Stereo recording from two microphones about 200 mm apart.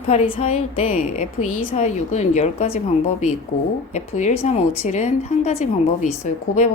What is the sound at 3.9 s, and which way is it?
A woman's voice, 35° left (ahead or behind).